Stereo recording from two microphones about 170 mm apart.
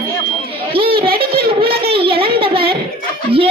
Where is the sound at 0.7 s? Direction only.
30° right (ahead or behind).